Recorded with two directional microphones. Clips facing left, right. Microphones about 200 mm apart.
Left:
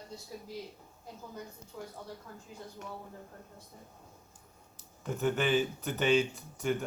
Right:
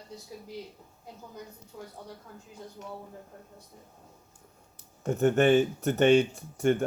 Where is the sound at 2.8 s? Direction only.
60° left (ahead or behind).